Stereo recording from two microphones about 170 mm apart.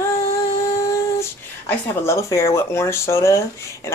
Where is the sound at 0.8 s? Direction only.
15° left (ahead or behind).